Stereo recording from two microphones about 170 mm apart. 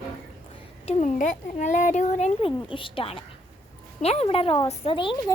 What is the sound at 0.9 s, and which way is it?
A child's voice, 45° left (ahead or behind).